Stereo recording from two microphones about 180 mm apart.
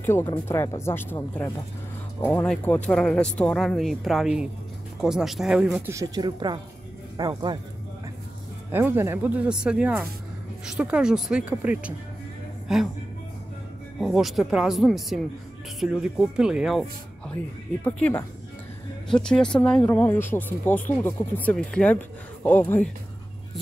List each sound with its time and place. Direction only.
0.0 s speech: 10° left (ahead or behind)
5.9 s speech: 20° right (ahead or behind)
8.7 s speech: 10° right (ahead or behind)
13.9 s speech: centre (ahead or behind)
17.8 s speech: 10° left (ahead or behind)